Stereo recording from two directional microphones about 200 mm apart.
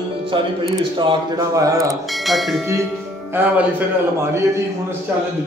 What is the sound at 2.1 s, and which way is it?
Speech, centre (ahead or behind).